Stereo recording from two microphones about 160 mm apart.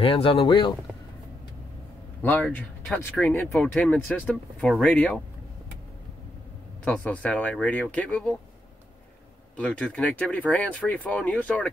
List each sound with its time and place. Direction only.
0.0 s speech: 35° left (ahead or behind)
2.2 s speech: 10° left (ahead or behind)
6.8 s speech: 5° left (ahead or behind)
9.6 s speech: 5° left (ahead or behind)